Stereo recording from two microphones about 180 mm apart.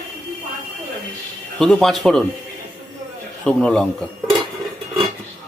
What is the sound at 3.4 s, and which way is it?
Speech, 5° left (ahead or behind).